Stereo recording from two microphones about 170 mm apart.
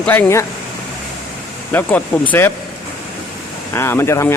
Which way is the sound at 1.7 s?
10° left (ahead or behind).